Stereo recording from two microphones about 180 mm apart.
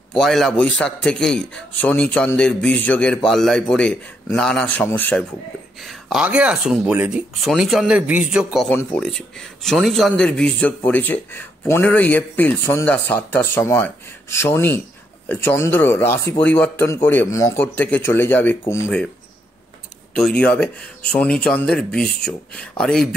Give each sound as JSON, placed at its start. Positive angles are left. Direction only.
{"t": 0.1, "sound": "a man's voice", "side_deg": 0}
{"t": 5.8, "sound": "a man's voice", "side_deg": 0}
{"t": 8.6, "sound": "a man's voice", "side_deg": 5}
{"t": 20.2, "sound": "a man's voice", "side_deg": 5}